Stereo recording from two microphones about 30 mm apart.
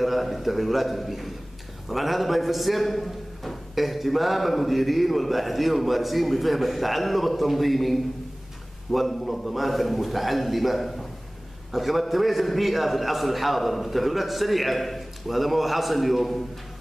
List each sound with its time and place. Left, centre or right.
0.0 s a man's voice: centre